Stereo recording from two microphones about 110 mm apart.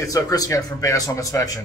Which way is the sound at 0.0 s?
35° left (ahead or behind).